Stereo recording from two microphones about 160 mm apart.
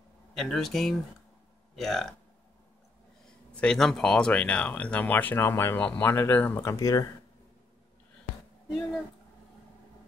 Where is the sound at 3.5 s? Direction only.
5° left (ahead or behind); by 7.1 s 20° left (ahead or behind).